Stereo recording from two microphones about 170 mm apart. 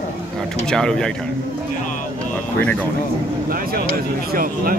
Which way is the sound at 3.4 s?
60° right (ahead or behind).